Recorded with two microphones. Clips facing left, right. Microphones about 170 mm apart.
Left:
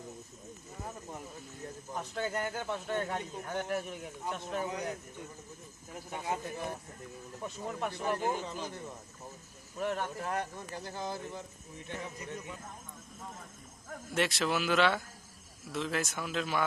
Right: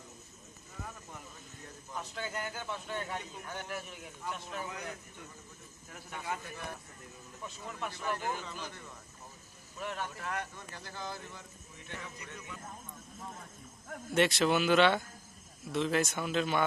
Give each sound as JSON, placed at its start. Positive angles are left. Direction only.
{"t": 1.9, "sound": "a man's voice", "side_deg": 50}
{"t": 4.6, "sound": "a man's voice", "side_deg": 35}
{"t": 6.1, "sound": "speech", "side_deg": 25}
{"t": 7.4, "sound": "a man's voice", "side_deg": 50}
{"t": 8.2, "sound": "speech", "side_deg": 20}
{"t": 9.7, "sound": "a man's voice", "side_deg": 45}
{"t": 10.2, "sound": "a man's voice", "side_deg": 30}
{"t": 13.9, "sound": "speech", "side_deg": 0}